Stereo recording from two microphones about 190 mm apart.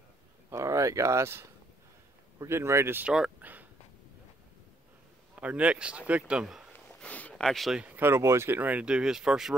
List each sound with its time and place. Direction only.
0.5 s speech: 15° right (ahead or behind)
5.3 s speech: 5° right (ahead or behind)
6.7 s speech: 5° left (ahead or behind)